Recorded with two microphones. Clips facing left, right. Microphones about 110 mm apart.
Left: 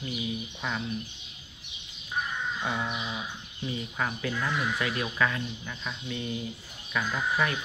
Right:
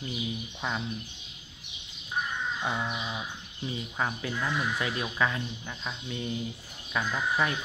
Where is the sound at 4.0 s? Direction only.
20° right (ahead or behind).